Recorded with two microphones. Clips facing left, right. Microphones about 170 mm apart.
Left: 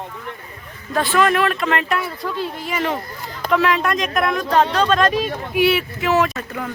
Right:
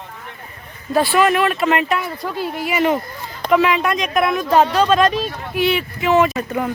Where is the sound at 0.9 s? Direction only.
10° right (ahead or behind).